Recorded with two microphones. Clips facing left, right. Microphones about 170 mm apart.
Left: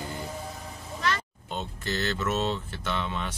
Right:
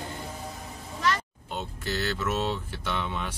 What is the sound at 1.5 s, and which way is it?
Speech, 5° right (ahead or behind).